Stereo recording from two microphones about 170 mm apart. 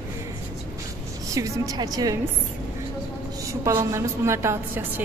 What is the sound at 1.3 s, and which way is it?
Speech, 20° right (ahead or behind).